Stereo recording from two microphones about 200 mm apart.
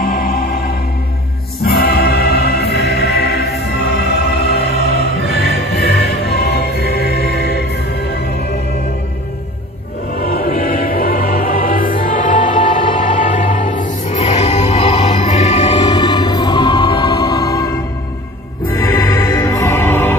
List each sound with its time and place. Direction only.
0.0 s music: 45° left (ahead or behind)
1.6 s music: 50° left (ahead or behind)
10.1 s music: 45° left (ahead or behind); by 17.7 s 15° left (ahead or behind)
18.8 s music: 15° left (ahead or behind)